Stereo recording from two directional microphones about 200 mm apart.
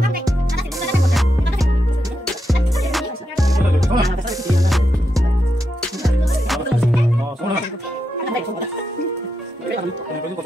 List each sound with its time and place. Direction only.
2.2 s music: centre (ahead or behind)
3.3 s music: 15° right (ahead or behind)
5.8 s music: centre (ahead or behind)